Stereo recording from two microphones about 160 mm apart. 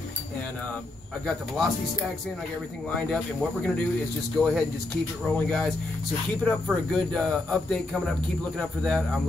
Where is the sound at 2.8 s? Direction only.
5° left (ahead or behind).